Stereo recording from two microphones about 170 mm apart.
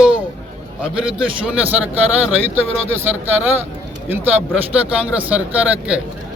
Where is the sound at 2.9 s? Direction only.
10° right (ahead or behind).